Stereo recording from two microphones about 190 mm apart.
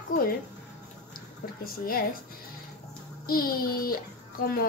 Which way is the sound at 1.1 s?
50° left (ahead or behind).